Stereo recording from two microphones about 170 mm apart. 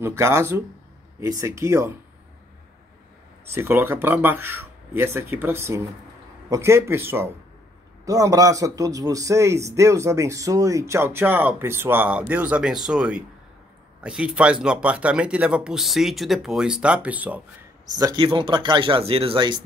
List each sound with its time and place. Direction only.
0.0 s a man's voice: 15° right (ahead or behind)
3.5 s a man's voice: 15° right (ahead or behind)
17.9 s speech: 25° right (ahead or behind)